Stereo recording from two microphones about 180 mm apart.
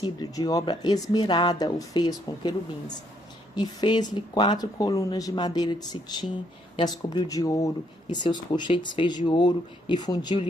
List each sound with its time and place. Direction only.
0.0 s speech: 20° left (ahead or behind)